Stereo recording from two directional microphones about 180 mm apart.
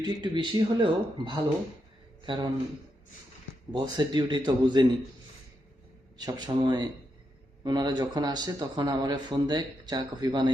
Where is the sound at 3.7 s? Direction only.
25° right (ahead or behind).